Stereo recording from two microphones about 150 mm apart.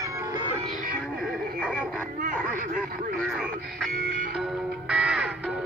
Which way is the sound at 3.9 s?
80° right.